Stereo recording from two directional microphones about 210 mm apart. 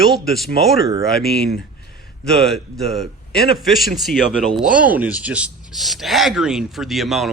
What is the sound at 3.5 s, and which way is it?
Speech, centre (ahead or behind).